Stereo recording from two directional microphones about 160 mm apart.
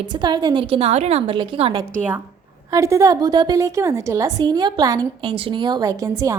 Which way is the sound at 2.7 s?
20° right (ahead or behind).